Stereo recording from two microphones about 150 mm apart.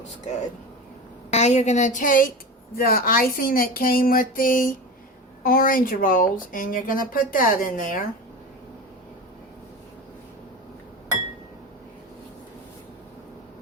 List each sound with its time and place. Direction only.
1.3 s a woman's voice: 50° left (ahead or behind); by 2.3 s 65° left (ahead or behind)
2.7 s speech: 80° left; by 8.0 s 65° left (ahead or behind)